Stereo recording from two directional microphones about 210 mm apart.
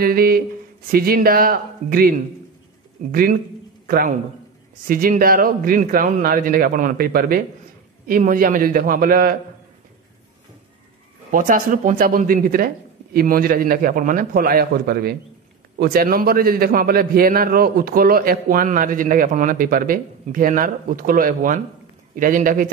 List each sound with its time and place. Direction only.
0.0 s a man's voice: 45° right (ahead or behind)
11.3 s a man's voice: 40° right (ahead or behind)